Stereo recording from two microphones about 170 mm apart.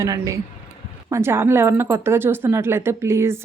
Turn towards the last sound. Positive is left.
turn(degrees=-15)  # may be behind; listen again after turning